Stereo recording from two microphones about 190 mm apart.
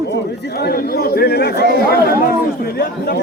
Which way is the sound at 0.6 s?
55° left (ahead or behind).